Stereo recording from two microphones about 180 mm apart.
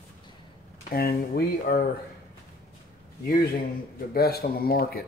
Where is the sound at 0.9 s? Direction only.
60° left (ahead or behind).